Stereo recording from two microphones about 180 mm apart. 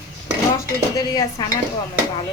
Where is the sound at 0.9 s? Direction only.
20° left (ahead or behind).